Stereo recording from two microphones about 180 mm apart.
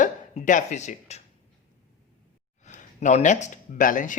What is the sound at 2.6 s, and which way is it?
Speech, 40° left (ahead or behind).